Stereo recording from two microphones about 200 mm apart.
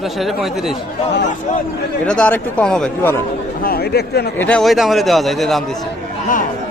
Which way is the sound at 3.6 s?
50° left (ahead or behind).